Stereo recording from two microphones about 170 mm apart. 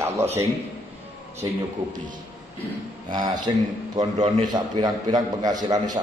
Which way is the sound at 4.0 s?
45° right (ahead or behind).